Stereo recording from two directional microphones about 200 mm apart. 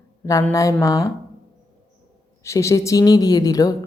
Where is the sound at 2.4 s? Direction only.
15° left (ahead or behind).